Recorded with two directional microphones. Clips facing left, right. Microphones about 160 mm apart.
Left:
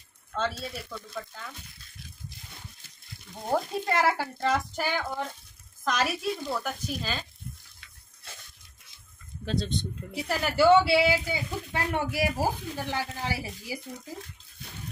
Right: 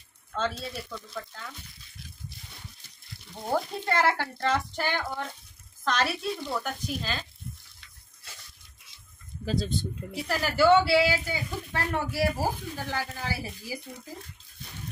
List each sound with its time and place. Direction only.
0.3 s speech: 5° left (ahead or behind)
3.5 s speech: 5° left (ahead or behind)
9.4 s speech: 5° right (ahead or behind)
10.9 s speech: 20° left (ahead or behind)